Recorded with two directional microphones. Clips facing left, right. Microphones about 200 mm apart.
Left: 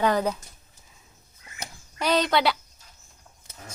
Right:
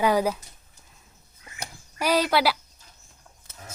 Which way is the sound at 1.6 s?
10° right (ahead or behind).